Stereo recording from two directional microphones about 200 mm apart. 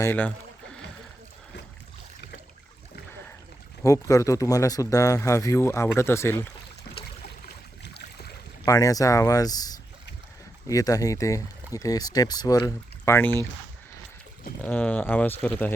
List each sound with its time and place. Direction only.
0.0 s rowboat: 10° left (ahead or behind)
3.8 s speech: 15° left (ahead or behind)
6.9 s a sound: 50° left (ahead or behind)
7.9 s boat: 55° left (ahead or behind)
8.6 s speech: 15° left (ahead or behind)
14.6 s speech: 5° left (ahead or behind)